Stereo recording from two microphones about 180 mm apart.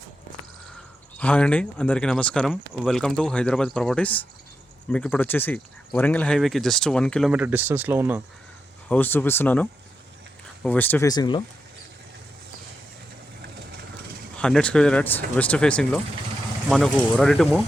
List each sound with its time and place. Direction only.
1.2 s speech: 5° left (ahead or behind); by 8.2 s 10° right (ahead or behind)
8.9 s speech: 10° left (ahead or behind)
11.1 s speech: 25° left (ahead or behind)
14.3 s speech: 5° left (ahead or behind)